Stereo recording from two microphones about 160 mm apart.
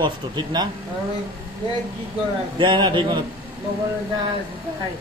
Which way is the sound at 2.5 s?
30° right (ahead or behind).